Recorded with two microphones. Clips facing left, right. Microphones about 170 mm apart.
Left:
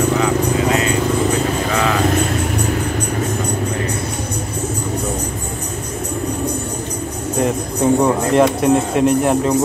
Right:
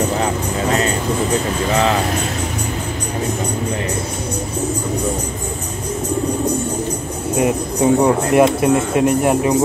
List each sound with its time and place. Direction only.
7.3 s music: 5° right (ahead or behind)
8.5 s speech: 5° right (ahead or behind)